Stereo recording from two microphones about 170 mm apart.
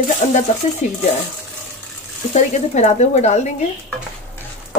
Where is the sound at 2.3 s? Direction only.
45° left (ahead or behind).